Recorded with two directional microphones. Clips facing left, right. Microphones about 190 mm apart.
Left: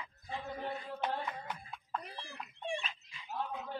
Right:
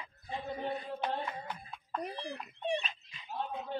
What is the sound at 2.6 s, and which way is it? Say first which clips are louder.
Fowl: right 5 dB; 20° right (ahead or behind).